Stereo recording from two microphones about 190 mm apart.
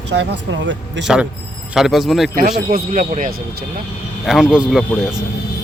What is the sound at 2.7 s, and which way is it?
Speech, 45° right (ahead or behind).